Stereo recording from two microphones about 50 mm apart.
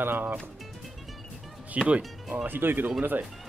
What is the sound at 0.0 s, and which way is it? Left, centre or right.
Speech, right.